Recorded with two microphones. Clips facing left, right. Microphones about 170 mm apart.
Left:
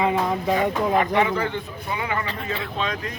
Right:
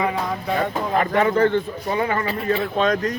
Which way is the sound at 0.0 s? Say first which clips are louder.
Left 2 dB; 20° left (ahead or behind).